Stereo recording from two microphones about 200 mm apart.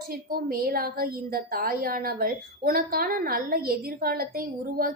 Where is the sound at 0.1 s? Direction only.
45° right (ahead or behind).